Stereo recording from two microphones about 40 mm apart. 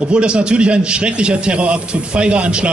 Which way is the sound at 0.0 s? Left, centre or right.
Right.